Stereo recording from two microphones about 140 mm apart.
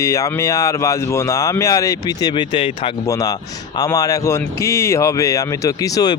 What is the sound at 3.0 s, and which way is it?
Speech, 25° left (ahead or behind).